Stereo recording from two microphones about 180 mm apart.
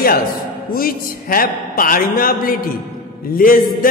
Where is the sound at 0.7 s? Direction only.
55° left (ahead or behind).